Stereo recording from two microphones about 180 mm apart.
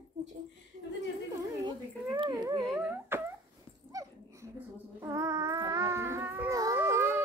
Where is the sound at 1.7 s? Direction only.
25° right (ahead or behind).